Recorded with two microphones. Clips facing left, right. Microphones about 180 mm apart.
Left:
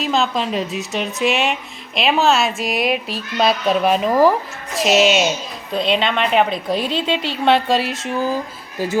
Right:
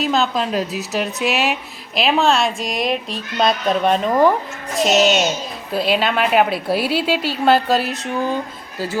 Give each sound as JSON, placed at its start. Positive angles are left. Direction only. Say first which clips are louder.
{"t": 0.0, "sound": "speech", "louder": "right 1 dB", "side_deg": 0}